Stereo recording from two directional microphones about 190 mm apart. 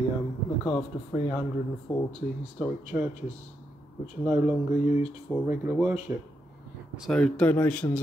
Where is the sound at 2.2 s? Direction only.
45° left (ahead or behind).